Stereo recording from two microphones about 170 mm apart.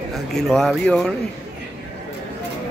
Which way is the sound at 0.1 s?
Centre (ahead or behind).